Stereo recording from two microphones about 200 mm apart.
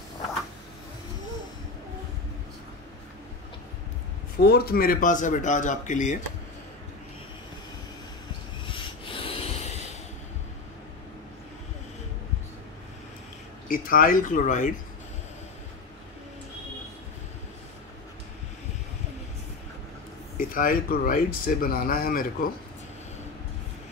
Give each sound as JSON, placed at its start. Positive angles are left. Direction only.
{"t": 4.4, "sound": "speech", "side_deg": 50}
{"t": 8.6, "sound": "rub", "side_deg": 25}
{"t": 13.7, "sound": "speech", "side_deg": 45}
{"t": 20.3, "sound": "speech", "side_deg": 45}